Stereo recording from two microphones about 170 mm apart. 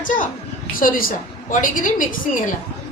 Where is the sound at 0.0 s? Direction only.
50° left (ahead or behind).